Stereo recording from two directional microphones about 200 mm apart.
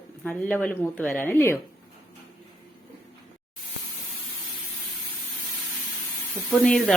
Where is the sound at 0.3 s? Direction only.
10° left (ahead or behind).